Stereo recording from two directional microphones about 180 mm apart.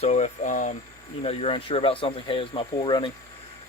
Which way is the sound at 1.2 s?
30° left (ahead or behind).